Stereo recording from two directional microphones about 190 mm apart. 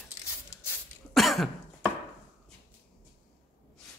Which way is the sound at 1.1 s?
Centre (ahead or behind).